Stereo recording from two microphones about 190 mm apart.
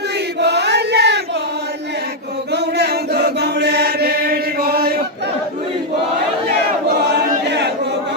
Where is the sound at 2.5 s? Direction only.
60° right (ahead or behind).